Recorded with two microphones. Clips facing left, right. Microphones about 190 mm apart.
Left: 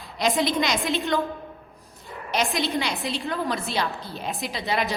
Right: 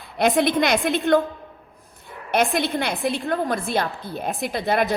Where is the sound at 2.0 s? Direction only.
55° right (ahead or behind).